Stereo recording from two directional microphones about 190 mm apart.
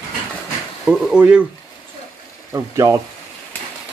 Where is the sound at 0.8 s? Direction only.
5° right (ahead or behind).